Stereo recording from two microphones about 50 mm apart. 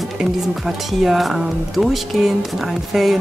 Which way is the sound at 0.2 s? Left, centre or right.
Centre.